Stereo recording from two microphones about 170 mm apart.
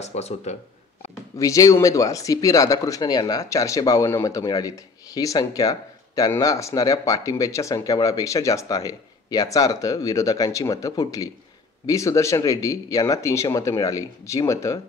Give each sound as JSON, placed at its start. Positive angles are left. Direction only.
{"t": 0.0, "sound": "speech", "side_deg": 40}
{"t": 1.4, "sound": "speech", "side_deg": 20}